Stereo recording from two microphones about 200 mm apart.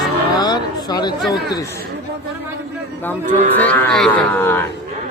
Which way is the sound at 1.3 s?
20° left (ahead or behind).